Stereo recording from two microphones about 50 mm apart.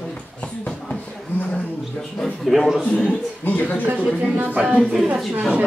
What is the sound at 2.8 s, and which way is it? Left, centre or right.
Speech, centre.